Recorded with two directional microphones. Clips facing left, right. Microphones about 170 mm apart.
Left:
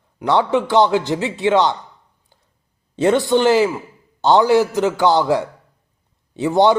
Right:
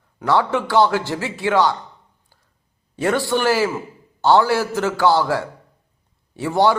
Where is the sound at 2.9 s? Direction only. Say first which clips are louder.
Left 5 dB; 20° left (ahead or behind).